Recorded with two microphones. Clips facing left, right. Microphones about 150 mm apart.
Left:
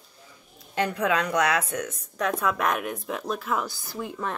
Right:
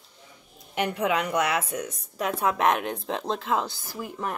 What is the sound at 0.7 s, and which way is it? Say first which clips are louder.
A woman's voice: left 1 dB; 20° right (ahead or behind).